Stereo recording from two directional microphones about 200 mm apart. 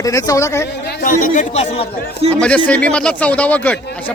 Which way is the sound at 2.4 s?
5° left (ahead or behind).